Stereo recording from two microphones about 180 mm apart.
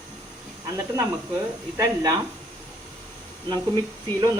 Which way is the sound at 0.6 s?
20° right (ahead or behind).